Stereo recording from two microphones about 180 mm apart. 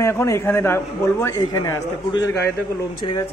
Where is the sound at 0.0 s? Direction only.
15° left (ahead or behind).